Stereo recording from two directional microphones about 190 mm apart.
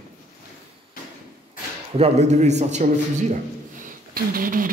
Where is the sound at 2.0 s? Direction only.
35° right (ahead or behind).